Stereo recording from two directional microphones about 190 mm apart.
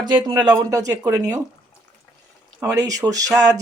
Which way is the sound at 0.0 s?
25° right (ahead or behind).